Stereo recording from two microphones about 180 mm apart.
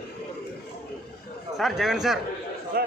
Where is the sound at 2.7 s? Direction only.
60° right (ahead or behind).